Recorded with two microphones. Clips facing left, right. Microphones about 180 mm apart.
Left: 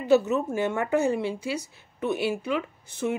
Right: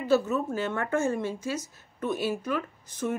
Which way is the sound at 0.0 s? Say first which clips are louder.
Left 3 dB; 20° left (ahead or behind).